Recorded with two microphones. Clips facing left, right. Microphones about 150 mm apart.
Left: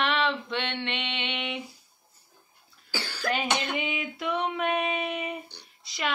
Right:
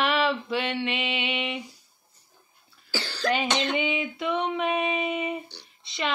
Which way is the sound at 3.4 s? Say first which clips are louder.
Right 3 dB; 10° left (ahead or behind).